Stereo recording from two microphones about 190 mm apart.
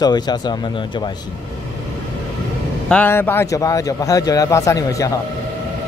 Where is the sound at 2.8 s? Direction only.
10° left (ahead or behind).